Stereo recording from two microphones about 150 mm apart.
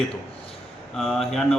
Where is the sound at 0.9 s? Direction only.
5° left (ahead or behind).